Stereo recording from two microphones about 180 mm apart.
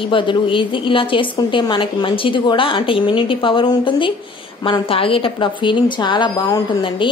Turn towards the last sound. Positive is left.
turn(degrees=25)  # may be behind; listen again after turning